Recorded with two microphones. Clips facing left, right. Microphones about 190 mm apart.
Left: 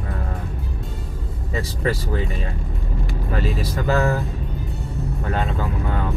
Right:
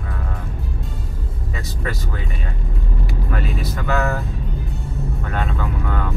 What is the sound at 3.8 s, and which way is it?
Speech, 30° left (ahead or behind).